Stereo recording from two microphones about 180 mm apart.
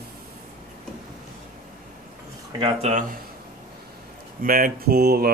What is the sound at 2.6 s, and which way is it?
Speech, 40° right (ahead or behind).